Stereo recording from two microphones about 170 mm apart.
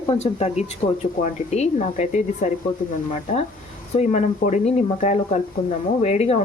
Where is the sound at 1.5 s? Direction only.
45° left (ahead or behind).